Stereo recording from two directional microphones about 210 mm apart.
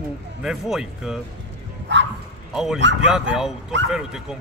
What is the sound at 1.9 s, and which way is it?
Bow-wow, 60° right (ahead or behind).